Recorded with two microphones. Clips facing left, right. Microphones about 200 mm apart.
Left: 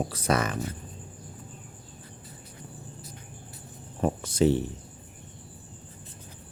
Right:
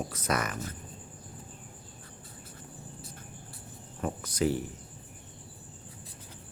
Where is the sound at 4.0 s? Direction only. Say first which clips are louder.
Left 6 dB; 25° left (ahead or behind).